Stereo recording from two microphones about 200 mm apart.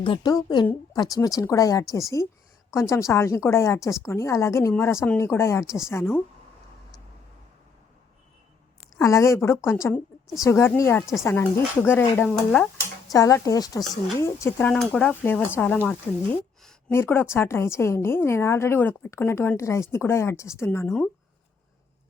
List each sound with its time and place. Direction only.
0.0 s a woman's voice: 20° left (ahead or behind)
9.0 s a woman's voice: 15° left (ahead or behind)
13.1 s a woman's voice: 15° left (ahead or behind)